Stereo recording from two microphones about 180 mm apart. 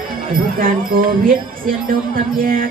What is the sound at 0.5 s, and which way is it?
Speech, 50° right (ahead or behind).